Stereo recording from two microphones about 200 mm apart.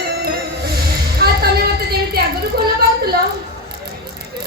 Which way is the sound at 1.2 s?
50° right (ahead or behind).